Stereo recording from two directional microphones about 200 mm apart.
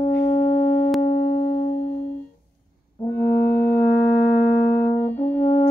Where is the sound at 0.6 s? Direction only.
10° left (ahead or behind).